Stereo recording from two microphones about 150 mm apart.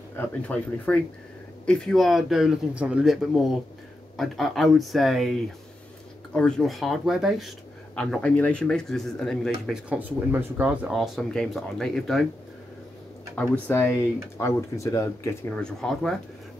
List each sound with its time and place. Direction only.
0.1 s speech: 10° left (ahead or behind)
6.3 s speech: 5° left (ahead or behind)
9.8 s speech: 10° right (ahead or behind)
13.4 s speech: 15° left (ahead or behind)
15.5 s speech: 5° left (ahead or behind)